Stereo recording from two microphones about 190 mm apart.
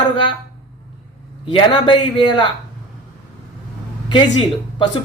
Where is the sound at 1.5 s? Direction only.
25° left (ahead or behind).